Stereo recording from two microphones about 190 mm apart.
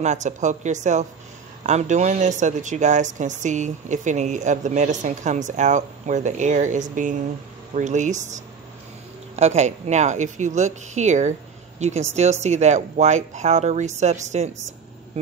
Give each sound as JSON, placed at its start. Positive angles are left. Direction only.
{"t": 0.0, "sound": "speech", "side_deg": -40}